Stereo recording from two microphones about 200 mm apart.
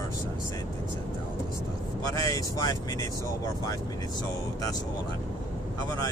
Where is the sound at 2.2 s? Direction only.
20° left (ahead or behind).